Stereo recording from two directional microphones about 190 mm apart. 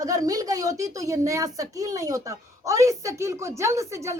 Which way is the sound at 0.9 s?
15° right (ahead or behind).